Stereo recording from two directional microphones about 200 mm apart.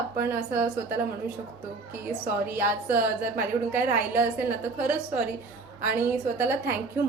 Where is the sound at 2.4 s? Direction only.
10° right (ahead or behind).